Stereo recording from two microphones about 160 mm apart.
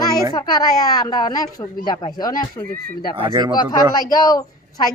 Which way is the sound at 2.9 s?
65° left (ahead or behind).